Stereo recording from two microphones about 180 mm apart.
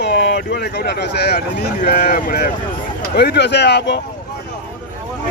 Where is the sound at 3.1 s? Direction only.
65° left (ahead or behind).